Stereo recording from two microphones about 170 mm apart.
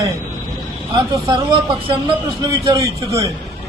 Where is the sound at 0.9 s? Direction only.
25° right (ahead or behind).